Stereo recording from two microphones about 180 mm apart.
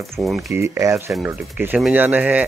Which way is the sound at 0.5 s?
15° right (ahead or behind).